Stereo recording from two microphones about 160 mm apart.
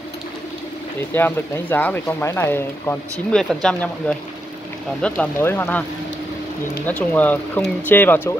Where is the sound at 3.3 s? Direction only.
5° left (ahead or behind).